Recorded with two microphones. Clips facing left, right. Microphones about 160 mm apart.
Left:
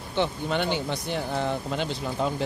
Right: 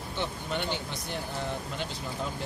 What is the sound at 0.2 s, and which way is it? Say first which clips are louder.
Speech: left 7 dB; 80° left.